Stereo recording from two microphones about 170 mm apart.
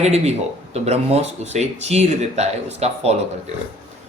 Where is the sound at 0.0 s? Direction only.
40° right (ahead or behind).